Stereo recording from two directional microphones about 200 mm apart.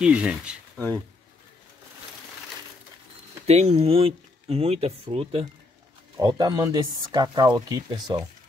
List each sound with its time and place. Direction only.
0.0 s speech: 5° right (ahead or behind)
3.4 s speech: 30° right (ahead or behind)